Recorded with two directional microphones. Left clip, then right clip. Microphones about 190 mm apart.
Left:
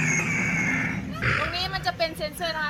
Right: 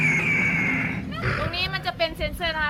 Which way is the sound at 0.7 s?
20° left (ahead or behind).